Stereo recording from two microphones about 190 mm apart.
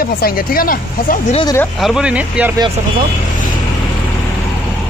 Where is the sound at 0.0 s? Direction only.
50° left (ahead or behind).